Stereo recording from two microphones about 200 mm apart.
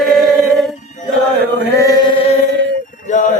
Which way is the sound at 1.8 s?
20° left (ahead or behind).